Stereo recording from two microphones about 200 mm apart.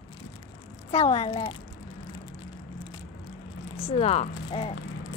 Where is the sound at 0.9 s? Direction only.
30° left (ahead or behind).